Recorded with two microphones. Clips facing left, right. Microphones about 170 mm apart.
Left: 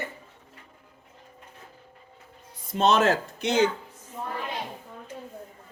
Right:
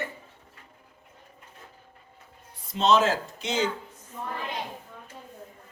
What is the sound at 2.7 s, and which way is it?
Speech, 60° left (ahead or behind).